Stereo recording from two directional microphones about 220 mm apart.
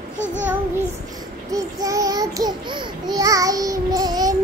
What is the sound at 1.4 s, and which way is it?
Babbling, 15° right (ahead or behind).